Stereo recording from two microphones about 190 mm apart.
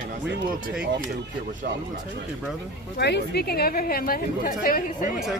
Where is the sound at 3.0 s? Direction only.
60° left (ahead or behind).